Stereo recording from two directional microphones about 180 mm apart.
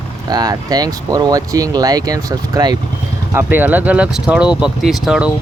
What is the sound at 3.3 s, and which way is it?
Speech, 10° right (ahead or behind).